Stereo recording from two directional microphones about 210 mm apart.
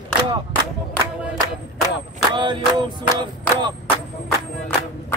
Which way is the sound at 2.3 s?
20° right (ahead or behind).